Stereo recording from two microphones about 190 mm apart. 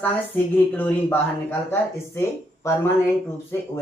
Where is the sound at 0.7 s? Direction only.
10° left (ahead or behind).